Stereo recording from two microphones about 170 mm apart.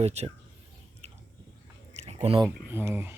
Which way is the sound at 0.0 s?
40° right (ahead or behind).